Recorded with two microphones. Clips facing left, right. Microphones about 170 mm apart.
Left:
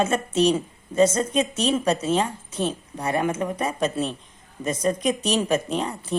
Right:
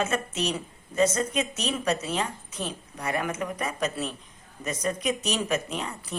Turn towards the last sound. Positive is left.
turn(degrees=30)  # may be behind; listen again after turning